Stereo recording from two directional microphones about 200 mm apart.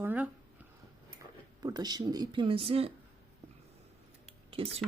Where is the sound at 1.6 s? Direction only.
20° right (ahead or behind).